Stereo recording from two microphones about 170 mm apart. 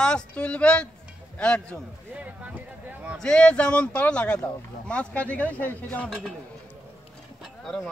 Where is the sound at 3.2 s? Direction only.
5° left (ahead or behind).